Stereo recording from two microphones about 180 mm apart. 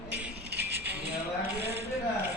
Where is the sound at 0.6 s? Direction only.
70° right (ahead or behind).